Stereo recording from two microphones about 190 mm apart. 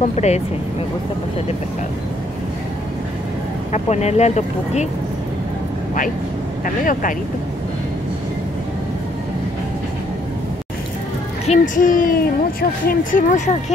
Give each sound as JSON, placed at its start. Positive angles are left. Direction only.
{"t": 0.1, "sound": "speech", "side_deg": 35}
{"t": 3.7, "sound": "speech", "side_deg": 35}
{"t": 6.6, "sound": "speech", "side_deg": 45}
{"t": 11.4, "sound": "speech", "side_deg": 40}